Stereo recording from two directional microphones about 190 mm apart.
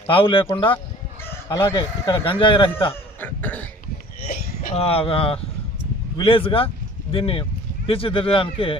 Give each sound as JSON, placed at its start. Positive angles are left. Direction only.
{"t": 0.1, "sound": "speech", "side_deg": 30}
{"t": 3.2, "sound": "cough", "side_deg": 10}
{"t": 4.7, "sound": "speech", "side_deg": 30}